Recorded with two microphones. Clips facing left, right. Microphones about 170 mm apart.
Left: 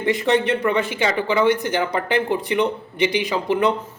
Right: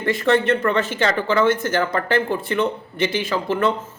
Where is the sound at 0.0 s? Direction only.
15° left (ahead or behind).